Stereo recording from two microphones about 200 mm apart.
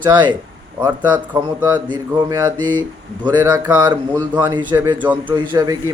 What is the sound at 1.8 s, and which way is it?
Speech, 20° right (ahead or behind).